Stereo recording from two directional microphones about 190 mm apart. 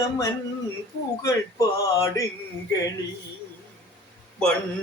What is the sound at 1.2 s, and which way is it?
Speech, 15° left (ahead or behind).